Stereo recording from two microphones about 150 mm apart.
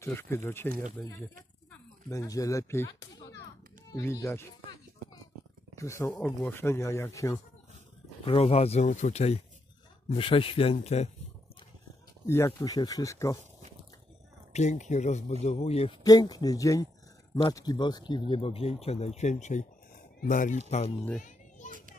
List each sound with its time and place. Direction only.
0.0 s speech: 15° left (ahead or behind)
2.0 s speech: 20° left (ahead or behind)
4.0 s speech: 15° left (ahead or behind)
5.8 s speech: 20° left (ahead or behind)
8.3 s speech: 45° left (ahead or behind)
12.3 s speech: 15° left (ahead or behind)
14.5 s speech: 50° left (ahead or behind)
16.0 s speech: 25° left (ahead or behind); by 20.5 s 60° left (ahead or behind)
21.6 s children playing: 60° right (ahead or behind)